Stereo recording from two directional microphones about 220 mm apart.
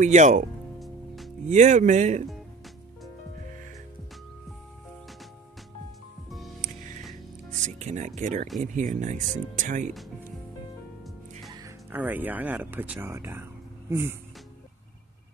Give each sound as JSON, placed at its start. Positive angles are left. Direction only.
{"t": 0.0, "sound": "speech", "side_deg": -35}
{"t": 0.7, "sound": "music", "side_deg": 0}
{"t": 1.5, "sound": "speech", "side_deg": -35}
{"t": 6.6, "sound": "music", "side_deg": -35}
{"t": 7.6, "sound": "speech", "side_deg": -35}
{"t": 11.5, "sound": "speech", "side_deg": -10}